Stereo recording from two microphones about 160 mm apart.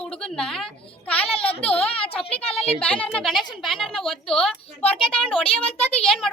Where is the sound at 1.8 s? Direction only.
35° left (ahead or behind).